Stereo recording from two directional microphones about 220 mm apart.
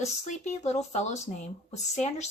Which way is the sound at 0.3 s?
30° left (ahead or behind).